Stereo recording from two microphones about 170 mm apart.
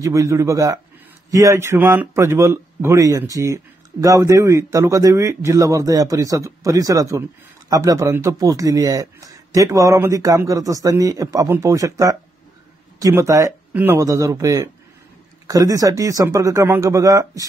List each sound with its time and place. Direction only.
0.0 s speech: 20° right (ahead or behind)